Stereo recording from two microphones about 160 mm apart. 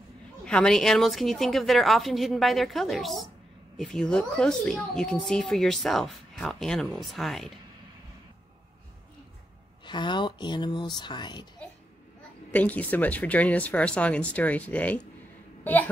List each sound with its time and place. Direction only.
0.5 s speech: 5° left (ahead or behind)
9.8 s speech: 30° left (ahead or behind)
12.4 s a child's voice: 10° left (ahead or behind)